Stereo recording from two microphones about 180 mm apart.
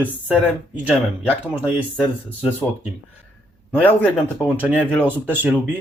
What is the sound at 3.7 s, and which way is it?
Speech, 10° left (ahead or behind).